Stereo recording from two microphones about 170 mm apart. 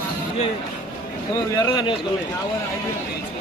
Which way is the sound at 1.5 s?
25° left (ahead or behind).